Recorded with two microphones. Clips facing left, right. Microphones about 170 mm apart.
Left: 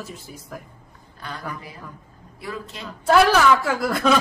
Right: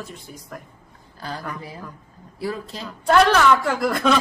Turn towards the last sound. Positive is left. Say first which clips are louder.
# even
turn(degrees=5)  # may be behind; listen again after turning